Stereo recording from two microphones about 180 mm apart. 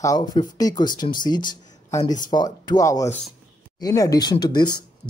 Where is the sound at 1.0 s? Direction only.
35° left (ahead or behind).